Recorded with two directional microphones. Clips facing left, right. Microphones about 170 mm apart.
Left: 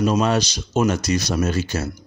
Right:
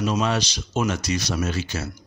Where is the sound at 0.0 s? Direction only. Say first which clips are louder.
Left 4 dB; 40° left (ahead or behind).